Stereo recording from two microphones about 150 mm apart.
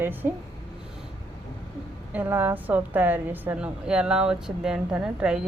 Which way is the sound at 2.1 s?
15° right (ahead or behind).